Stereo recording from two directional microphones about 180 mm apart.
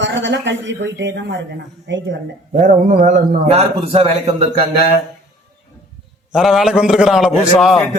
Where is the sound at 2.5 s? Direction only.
45° right (ahead or behind).